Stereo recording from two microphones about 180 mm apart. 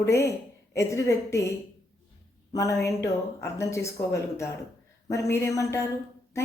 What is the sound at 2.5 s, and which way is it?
A woman's voice, 15° left (ahead or behind).